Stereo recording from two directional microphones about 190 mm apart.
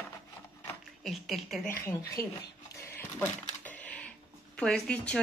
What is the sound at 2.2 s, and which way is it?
Speech, 15° left (ahead or behind).